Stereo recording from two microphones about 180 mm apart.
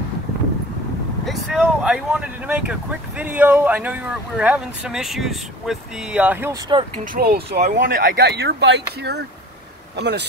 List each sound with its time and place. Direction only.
1.2 s speech: centre (ahead or behind)
7.2 s speech: 60° right (ahead or behind)